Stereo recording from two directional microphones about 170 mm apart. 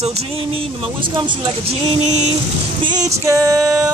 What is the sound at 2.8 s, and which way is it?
Music, 20° right (ahead or behind).